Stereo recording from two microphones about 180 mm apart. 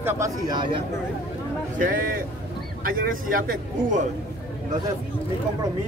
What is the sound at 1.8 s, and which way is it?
A man's voice, 50° right (ahead or behind).